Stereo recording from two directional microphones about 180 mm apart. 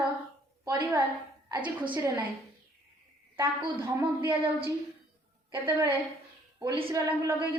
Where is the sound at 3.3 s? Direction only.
25° right (ahead or behind).